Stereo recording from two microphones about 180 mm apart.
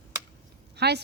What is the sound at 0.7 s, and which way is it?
Speech, 65° right (ahead or behind).